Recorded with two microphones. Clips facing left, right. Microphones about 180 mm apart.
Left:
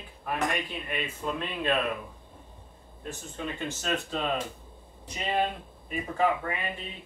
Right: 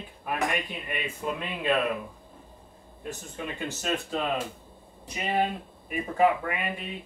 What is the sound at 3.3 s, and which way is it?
Speech, 10° right (ahead or behind).